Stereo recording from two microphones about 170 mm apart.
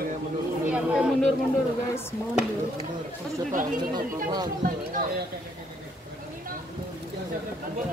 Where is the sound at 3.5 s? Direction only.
50° right (ahead or behind).